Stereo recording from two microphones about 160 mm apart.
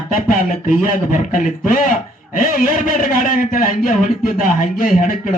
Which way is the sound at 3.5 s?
60° left (ahead or behind).